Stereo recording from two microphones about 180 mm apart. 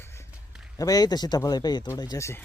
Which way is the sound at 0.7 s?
20° left (ahead or behind).